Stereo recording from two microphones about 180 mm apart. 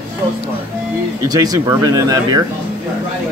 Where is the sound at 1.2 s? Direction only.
20° right (ahead or behind).